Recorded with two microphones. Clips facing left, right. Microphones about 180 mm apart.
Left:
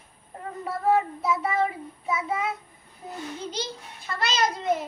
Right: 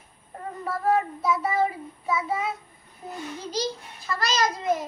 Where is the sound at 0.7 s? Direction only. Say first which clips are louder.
Left 1 dB; 20° left (ahead or behind).